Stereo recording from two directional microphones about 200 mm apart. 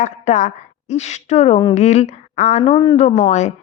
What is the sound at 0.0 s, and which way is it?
A woman's voice, 35° left (ahead or behind).